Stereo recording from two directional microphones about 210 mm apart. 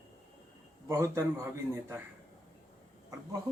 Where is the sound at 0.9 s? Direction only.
10° right (ahead or behind).